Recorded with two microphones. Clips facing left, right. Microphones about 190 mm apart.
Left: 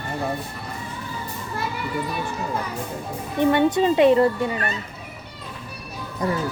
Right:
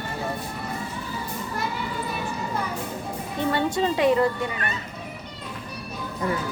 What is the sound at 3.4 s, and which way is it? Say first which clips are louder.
Speech: left 6 dB; 20° left (ahead or behind).